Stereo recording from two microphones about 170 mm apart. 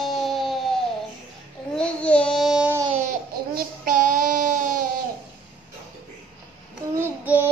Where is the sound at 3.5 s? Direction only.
55° right (ahead or behind).